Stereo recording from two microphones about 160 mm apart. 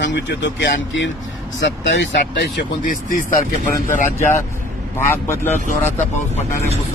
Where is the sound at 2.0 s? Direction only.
90° left; by 3.4 s 60° left (ahead or behind).